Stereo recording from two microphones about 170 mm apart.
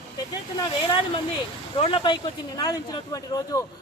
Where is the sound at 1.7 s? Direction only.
30° left (ahead or behind).